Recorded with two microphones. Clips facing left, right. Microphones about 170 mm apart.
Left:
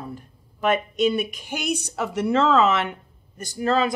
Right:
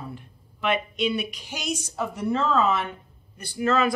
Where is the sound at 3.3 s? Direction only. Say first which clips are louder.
Left 1 dB; 40° left (ahead or behind).